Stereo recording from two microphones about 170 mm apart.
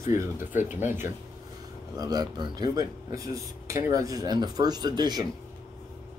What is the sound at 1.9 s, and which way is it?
Speech, 20° right (ahead or behind).